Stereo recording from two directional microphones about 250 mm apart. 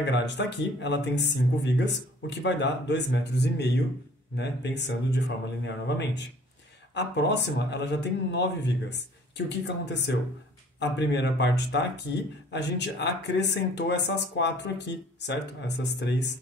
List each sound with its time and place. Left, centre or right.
0.0 s speech: left